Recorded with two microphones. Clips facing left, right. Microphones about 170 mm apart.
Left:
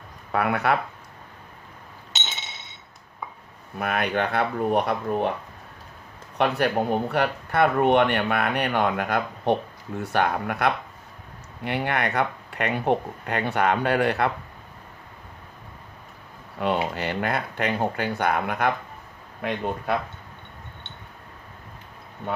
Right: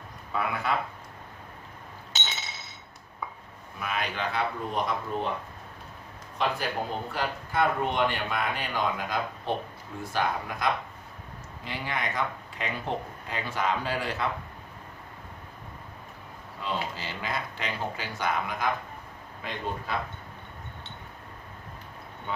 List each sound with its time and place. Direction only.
0.3 s speech: 65° left (ahead or behind)
3.8 s speech: 60° left (ahead or behind)
6.3 s speech: 65° left (ahead or behind)
16.6 s speech: 65° left (ahead or behind)